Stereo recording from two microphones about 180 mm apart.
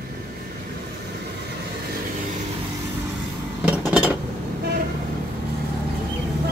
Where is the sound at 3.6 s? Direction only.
5° right (ahead or behind).